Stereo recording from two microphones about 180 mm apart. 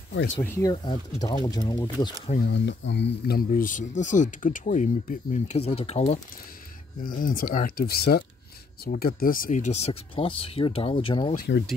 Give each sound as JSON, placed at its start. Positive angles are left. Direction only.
{"t": 0.4, "sound": "speech", "side_deg": 15}
{"t": 2.5, "sound": "speech", "side_deg": 85}
{"t": 7.0, "sound": "speech", "side_deg": 50}
{"t": 11.3, "sound": "speech", "side_deg": 65}